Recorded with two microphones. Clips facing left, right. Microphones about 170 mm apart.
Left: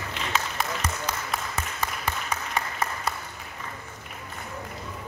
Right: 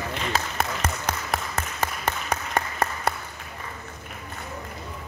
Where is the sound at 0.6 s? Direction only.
50° right (ahead or behind).